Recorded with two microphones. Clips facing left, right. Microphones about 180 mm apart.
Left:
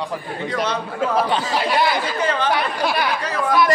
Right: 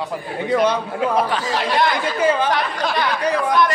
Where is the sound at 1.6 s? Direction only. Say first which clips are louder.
Right 1 dB; 5° left (ahead or behind).